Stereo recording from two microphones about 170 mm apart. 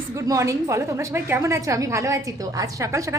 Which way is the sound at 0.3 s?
20° right (ahead or behind).